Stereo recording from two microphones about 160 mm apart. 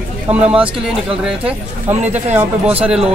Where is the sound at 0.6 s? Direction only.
5° right (ahead or behind).